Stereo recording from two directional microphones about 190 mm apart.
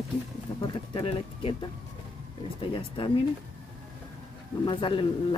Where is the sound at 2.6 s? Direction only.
25° left (ahead or behind).